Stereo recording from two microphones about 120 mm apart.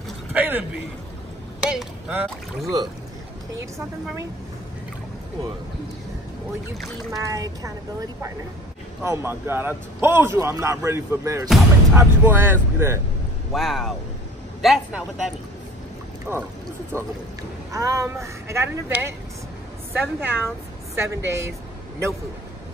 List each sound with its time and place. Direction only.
0.3 s a sound: 15° right (ahead or behind)
1.6 s a man's voice: 5° right (ahead or behind)
7.1 s a man's voice: 30° right (ahead or behind)
9.0 s a man's voice: 20° right (ahead or behind)
13.5 s a man's voice: centre (ahead or behind)
16.3 s a man's voice: 20° right (ahead or behind)